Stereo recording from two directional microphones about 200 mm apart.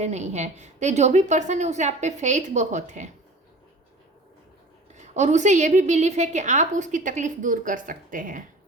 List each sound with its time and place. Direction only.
0.0 s a woman's voice: 35° right (ahead or behind)
4.9 s a woman's voice: 35° right (ahead or behind)